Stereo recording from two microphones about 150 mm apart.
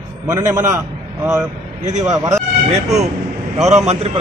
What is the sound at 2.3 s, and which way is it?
A man's voice, 45° right (ahead or behind).